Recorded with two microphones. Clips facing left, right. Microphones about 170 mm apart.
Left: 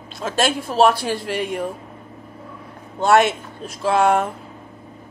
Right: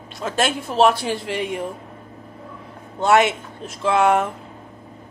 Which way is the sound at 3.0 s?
20° right (ahead or behind).